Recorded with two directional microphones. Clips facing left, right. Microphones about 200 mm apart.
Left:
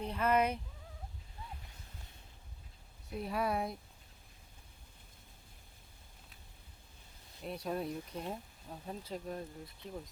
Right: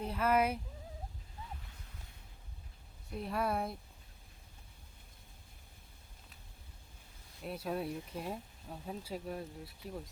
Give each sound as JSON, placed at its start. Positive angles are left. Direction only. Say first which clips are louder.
{"t": 0.0, "sound": "speech", "louder": "even", "side_deg": -5}
{"t": 3.1, "sound": "speech", "louder": "even", "side_deg": 0}
{"t": 7.4, "sound": "speech", "louder": "even", "side_deg": -5}